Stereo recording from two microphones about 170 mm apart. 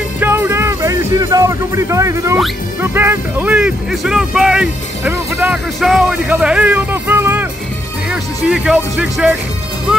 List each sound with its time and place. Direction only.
0.2 s music: 15° right (ahead or behind)
2.8 s speech: 15° right (ahead or behind)
5.8 s speech: centre (ahead or behind)